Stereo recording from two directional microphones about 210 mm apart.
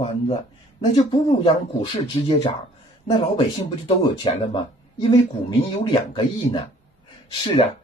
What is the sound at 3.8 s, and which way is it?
Speech, 25° left (ahead or behind).